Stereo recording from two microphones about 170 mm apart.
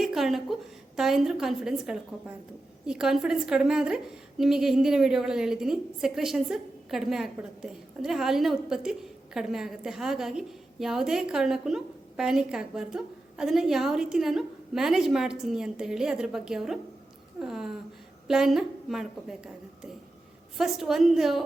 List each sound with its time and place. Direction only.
0.0 s a woman's voice: centre (ahead or behind)
20.6 s a woman's voice: centre (ahead or behind)